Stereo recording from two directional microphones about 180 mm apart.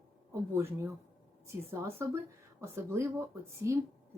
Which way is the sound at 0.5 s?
15° right (ahead or behind).